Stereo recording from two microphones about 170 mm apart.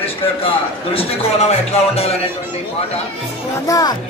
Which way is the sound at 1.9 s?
35° left (ahead or behind).